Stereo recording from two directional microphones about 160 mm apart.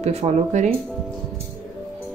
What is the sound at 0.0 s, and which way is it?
Speech, 45° right (ahead or behind).